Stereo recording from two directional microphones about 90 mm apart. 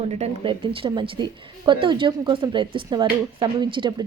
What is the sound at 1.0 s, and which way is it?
A woman's voice, 70° right (ahead or behind).